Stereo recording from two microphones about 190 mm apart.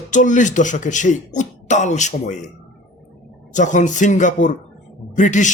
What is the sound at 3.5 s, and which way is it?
Speech, 40° left (ahead or behind).